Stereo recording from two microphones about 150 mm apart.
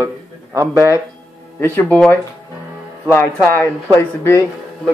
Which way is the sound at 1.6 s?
10° left (ahead or behind).